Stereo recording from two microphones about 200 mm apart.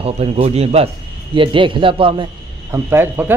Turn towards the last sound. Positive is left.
turn(degrees=-10)  # may be behind; listen again after turning